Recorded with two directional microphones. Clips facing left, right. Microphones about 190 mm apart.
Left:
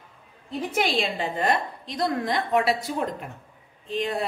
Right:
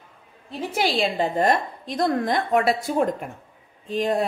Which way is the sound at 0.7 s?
35° right (ahead or behind).